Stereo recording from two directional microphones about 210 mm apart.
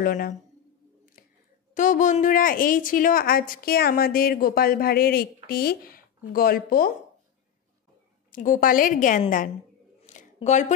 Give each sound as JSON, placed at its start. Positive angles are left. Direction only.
{"t": 0.0, "sound": "a woman's voice", "side_deg": 40}
{"t": 1.8, "sound": "a woman's voice", "side_deg": 35}
{"t": 8.3, "sound": "a woman's voice", "side_deg": 40}
{"t": 10.0, "sound": "a sound", "side_deg": 35}